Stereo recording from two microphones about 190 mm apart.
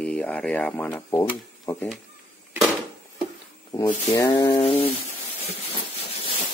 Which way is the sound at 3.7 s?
15° left (ahead or behind).